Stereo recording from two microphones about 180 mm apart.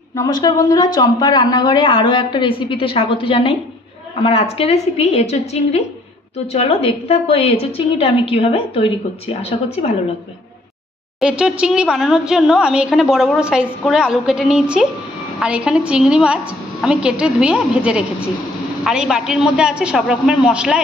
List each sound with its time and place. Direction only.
0.2 s a woman's voice: 20° left (ahead or behind)
11.1 s a woman's voice: 5° right (ahead or behind)